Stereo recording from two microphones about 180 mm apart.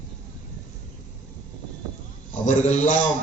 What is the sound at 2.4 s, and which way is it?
Speech, 45° left (ahead or behind).